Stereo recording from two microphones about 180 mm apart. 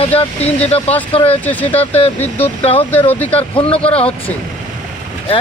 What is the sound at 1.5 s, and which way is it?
Speech, 10° left (ahead or behind).